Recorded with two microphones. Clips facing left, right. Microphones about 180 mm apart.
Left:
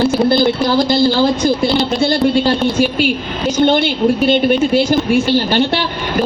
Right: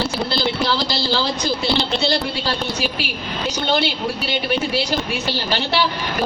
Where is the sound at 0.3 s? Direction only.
50° left (ahead or behind).